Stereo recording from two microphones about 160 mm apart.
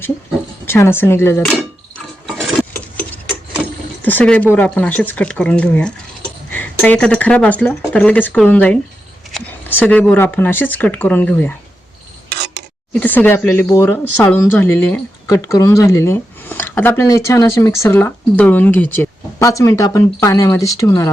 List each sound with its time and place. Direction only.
0.6 s speech: 15° left (ahead or behind)
2.2 s wood: centre (ahead or behind)
4.0 s speech: 10° left (ahead or behind)
12.9 s speech: 10° left (ahead or behind)